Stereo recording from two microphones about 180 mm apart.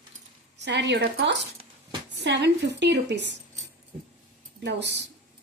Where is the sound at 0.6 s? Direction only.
75° right (ahead or behind).